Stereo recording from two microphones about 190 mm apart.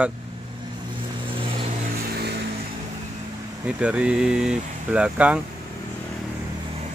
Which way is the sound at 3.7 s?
5° right (ahead or behind).